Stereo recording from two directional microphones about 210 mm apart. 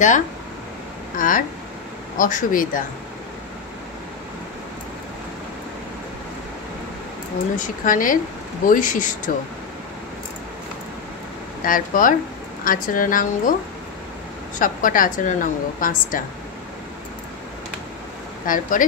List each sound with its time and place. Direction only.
1.1 s a woman's voice: 40° left (ahead or behind)
7.5 s a woman's voice: 40° left (ahead or behind)
11.6 s a woman's voice: 40° left (ahead or behind)
14.6 s a woman's voice: 40° left (ahead or behind)
18.5 s a woman's voice: 40° left (ahead or behind)